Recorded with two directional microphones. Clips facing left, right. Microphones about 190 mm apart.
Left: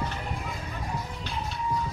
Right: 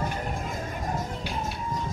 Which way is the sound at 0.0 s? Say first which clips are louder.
Right 3 dB; 45° right (ahead or behind).